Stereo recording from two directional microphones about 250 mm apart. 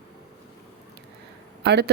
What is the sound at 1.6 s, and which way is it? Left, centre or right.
Speech, right.